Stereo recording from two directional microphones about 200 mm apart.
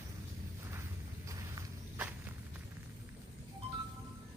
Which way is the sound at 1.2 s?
15° right (ahead or behind).